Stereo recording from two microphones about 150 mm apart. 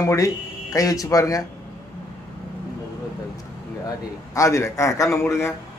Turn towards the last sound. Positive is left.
turn(degrees=15)  # may be behind; listen again after turning